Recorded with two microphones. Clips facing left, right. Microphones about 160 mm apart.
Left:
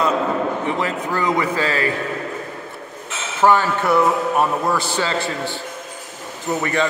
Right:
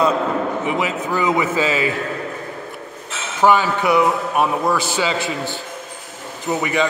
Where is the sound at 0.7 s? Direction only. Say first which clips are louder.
Right 1 dB; 10° right (ahead or behind).